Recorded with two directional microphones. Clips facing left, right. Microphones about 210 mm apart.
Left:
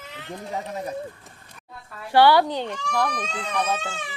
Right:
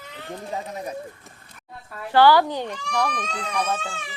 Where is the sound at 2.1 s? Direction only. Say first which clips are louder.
Right 1 dB; 15° left (ahead or behind).